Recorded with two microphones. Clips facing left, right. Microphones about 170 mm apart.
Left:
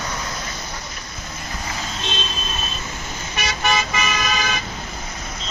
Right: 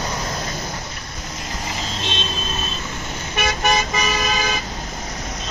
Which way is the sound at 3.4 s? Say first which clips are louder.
Right 2 dB; 45° right (ahead or behind).